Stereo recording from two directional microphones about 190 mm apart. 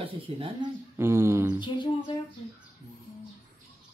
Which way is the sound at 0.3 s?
30° right (ahead or behind).